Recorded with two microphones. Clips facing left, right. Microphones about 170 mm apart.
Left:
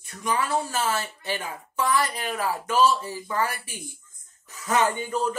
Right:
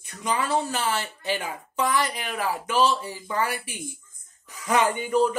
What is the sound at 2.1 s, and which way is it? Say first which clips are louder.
Speech: left 1 dB; 40° left (ahead or behind).